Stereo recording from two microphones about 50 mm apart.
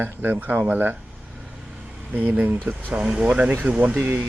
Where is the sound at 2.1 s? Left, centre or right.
Right.